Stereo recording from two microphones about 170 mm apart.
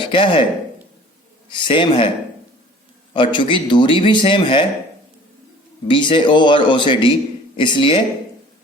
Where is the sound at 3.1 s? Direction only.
30° left (ahead or behind).